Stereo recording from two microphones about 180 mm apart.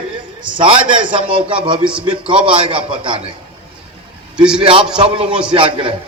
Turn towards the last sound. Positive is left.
turn(degrees=-30)  # may be behind; listen again after turning